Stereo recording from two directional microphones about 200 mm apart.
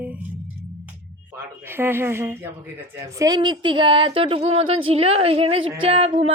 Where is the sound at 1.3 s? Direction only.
10° right (ahead or behind).